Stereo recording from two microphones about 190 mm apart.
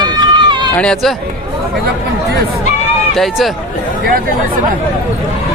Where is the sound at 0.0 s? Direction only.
25° right (ahead or behind).